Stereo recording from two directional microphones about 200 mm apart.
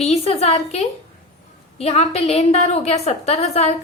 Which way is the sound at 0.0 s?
30° left (ahead or behind).